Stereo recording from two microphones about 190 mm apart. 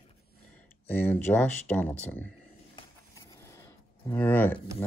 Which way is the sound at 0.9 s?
10° left (ahead or behind).